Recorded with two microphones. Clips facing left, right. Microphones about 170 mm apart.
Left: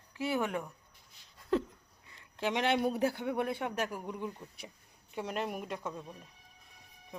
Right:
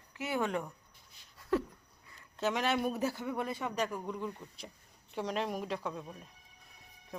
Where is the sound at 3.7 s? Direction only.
10° left (ahead or behind).